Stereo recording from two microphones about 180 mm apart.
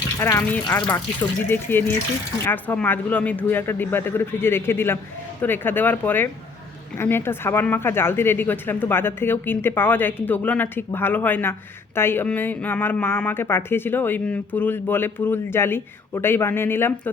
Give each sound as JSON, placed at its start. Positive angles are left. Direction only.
{"t": 0.2, "sound": "speech", "side_deg": 15}